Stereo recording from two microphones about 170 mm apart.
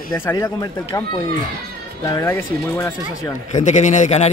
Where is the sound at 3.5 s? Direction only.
45° left (ahead or behind).